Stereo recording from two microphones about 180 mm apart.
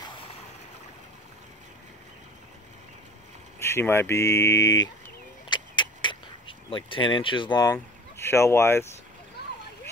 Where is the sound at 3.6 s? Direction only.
15° left (ahead or behind).